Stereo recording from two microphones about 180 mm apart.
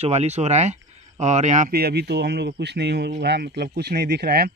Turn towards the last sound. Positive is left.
turn(degrees=-60)  # may be behind; listen again after turning